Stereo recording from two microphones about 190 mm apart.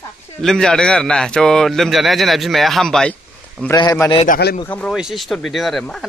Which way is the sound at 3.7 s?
15° left (ahead or behind).